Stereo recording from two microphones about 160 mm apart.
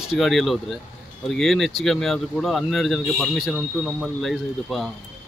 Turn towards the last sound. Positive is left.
turn(degrees=0)  # may be behind; listen again after turning